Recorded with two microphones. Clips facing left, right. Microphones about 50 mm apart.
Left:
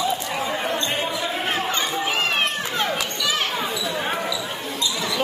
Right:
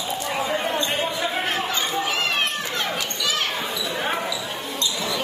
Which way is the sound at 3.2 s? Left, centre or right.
Left.